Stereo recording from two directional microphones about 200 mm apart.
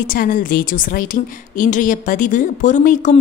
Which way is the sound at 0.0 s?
45° left (ahead or behind).